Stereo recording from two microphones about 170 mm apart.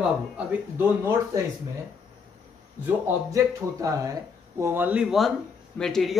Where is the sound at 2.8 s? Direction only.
20° right (ahead or behind).